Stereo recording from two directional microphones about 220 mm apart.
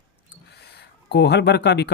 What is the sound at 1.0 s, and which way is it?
Speech, 50° left (ahead or behind).